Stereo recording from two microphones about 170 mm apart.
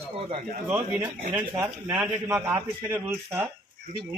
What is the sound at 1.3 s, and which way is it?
A man's voice, 10° right (ahead or behind).